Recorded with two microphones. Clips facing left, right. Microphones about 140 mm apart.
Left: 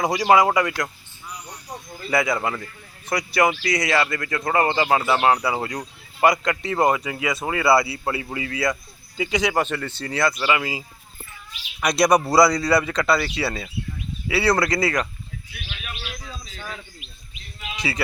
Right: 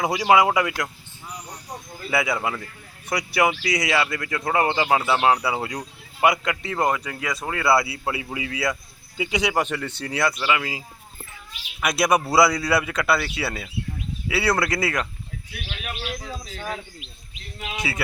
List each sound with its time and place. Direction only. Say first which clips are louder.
0.0 s speech: left 1 dB; 5° right (ahead or behind)
10.4 s speech: left 2 dB; 5° left (ahead or behind)
11.8 s speech: left 3 dB; 5° right (ahead or behind)
15.7 s bird: right 5 dB; 40° right (ahead or behind)